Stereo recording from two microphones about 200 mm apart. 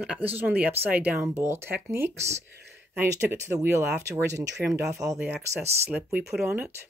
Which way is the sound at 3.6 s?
10° right (ahead or behind).